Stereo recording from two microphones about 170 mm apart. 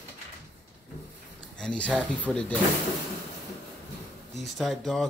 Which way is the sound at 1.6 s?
5° left (ahead or behind).